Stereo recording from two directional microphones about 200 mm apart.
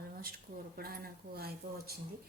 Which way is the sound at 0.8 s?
50° right (ahead or behind).